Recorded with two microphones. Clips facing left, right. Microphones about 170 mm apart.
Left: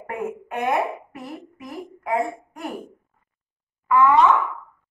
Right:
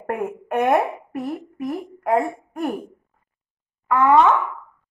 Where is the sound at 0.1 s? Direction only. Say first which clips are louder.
Right 5 dB; 55° right (ahead or behind).